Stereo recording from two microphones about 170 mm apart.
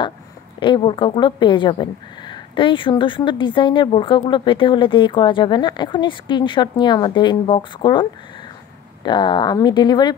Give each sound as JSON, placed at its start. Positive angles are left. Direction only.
{"t": 0.6, "sound": "speech", "side_deg": 30}